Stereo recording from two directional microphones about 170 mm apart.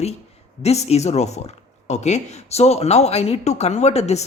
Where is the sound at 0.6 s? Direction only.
40° left (ahead or behind).